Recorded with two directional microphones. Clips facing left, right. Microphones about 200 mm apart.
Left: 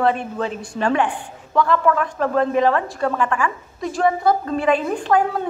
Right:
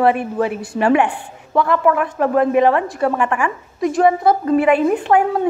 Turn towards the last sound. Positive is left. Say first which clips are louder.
# right 3 dB
turn(degrees=-25)  # may be behind; listen again after turning